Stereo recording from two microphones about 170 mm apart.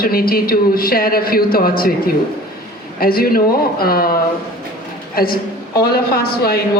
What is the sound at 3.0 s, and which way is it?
A woman's voice, 60° left (ahead or behind).